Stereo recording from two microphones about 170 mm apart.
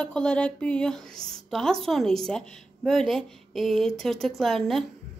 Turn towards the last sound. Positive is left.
turn(degrees=0)  # may be behind; listen again after turning